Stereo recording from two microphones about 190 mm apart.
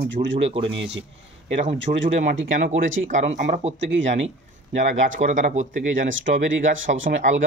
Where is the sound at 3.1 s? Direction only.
40° right (ahead or behind).